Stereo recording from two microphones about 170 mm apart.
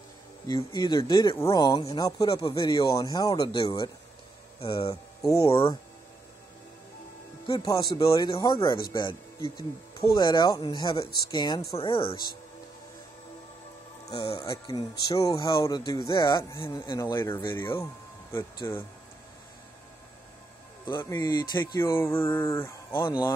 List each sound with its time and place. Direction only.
0.5 s speech: 25° left (ahead or behind)
4.6 s speech: 35° left (ahead or behind)
5.2 s speech: 15° left (ahead or behind)
7.4 s speech: 20° left (ahead or behind)
10.1 s speech: 25° left (ahead or behind)
14.0 s speech: 35° left (ahead or behind)
14.4 s speech: 20° left (ahead or behind)
20.8 s speech: 25° left (ahead or behind)